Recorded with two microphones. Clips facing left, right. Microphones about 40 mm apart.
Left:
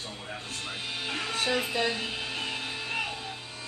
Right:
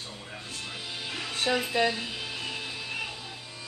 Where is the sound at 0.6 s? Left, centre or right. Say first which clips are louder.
Left 3 dB; left.